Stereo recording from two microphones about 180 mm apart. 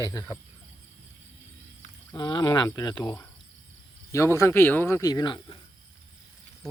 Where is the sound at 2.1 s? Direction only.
25° left (ahead or behind).